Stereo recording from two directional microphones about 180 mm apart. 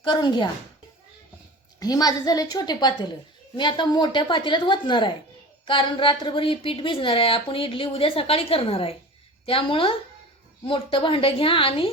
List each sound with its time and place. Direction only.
0.0 s a woman's voice: 25° left (ahead or behind)
1.8 s a woman's voice: 20° left (ahead or behind)